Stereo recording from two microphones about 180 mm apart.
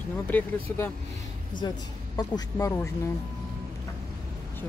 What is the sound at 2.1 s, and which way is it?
Speech, 20° left (ahead or behind).